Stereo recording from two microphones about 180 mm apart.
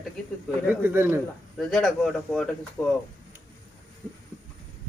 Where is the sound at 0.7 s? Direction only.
10° right (ahead or behind).